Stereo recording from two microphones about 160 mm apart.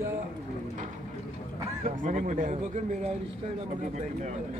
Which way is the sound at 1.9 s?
50° right (ahead or behind).